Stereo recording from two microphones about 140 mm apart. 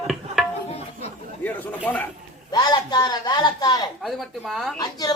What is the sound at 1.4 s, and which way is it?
Speech, 10° left (ahead or behind).